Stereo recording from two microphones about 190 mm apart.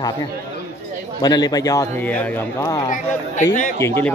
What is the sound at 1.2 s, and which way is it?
A man's voice, 20° left (ahead or behind).